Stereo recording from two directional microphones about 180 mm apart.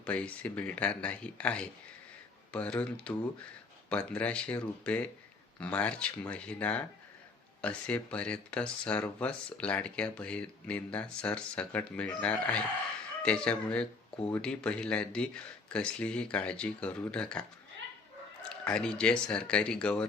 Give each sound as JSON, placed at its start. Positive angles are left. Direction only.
{"t": 0.0, "sound": "speech", "side_deg": 5}
{"t": 18.4, "sound": "speech", "side_deg": 5}